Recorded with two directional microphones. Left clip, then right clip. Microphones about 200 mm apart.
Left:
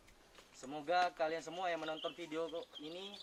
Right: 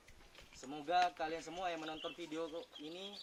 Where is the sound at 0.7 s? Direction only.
Centre (ahead or behind).